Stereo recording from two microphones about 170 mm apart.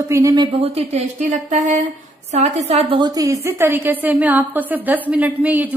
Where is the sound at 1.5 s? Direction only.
45° right (ahead or behind).